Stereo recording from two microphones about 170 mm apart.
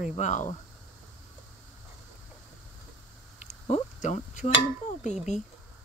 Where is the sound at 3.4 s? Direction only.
40° left (ahead or behind).